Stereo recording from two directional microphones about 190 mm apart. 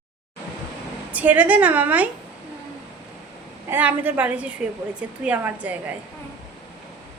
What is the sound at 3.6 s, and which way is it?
A woman's voice, 10° right (ahead or behind).